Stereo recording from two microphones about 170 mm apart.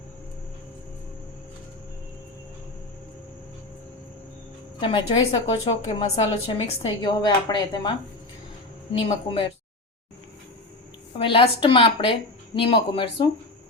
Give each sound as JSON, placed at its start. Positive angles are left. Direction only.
{"t": 4.8, "sound": "a woman's voice", "side_deg": 30}
{"t": 11.2, "sound": "a woman's voice", "side_deg": 30}